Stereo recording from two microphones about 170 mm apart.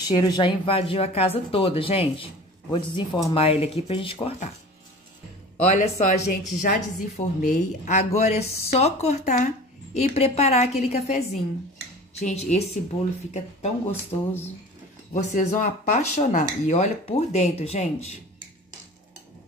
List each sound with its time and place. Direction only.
0.1 s speech: 25° left (ahead or behind)
3.3 s speech: 35° left (ahead or behind)
5.6 s speech: 40° left (ahead or behind)
15.1 s speech: 50° left (ahead or behind)